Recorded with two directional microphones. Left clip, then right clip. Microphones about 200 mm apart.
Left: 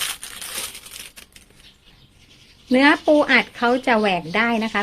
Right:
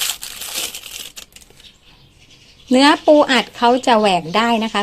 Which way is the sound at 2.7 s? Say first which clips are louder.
Right 4 dB; 15° right (ahead or behind).